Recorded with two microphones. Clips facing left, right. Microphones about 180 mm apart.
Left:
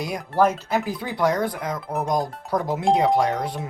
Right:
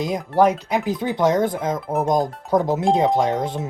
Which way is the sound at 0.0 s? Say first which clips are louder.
Right 3 dB; 20° right (ahead or behind).